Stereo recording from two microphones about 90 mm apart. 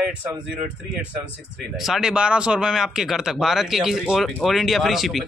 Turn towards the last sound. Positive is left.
turn(degrees=0)  # may be behind; listen again after turning